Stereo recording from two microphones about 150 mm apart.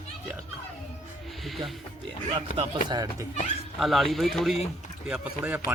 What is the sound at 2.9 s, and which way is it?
Speech, 25° right (ahead or behind).